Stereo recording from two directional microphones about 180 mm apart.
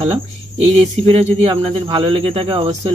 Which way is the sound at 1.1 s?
30° right (ahead or behind).